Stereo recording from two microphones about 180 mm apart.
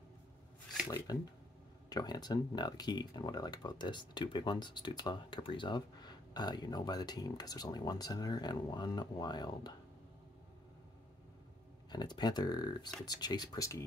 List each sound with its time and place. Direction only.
0.8 s speech: 20° left (ahead or behind)
11.9 s speech: 25° left (ahead or behind)